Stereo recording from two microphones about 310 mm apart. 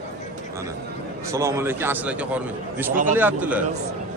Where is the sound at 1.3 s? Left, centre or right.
Centre.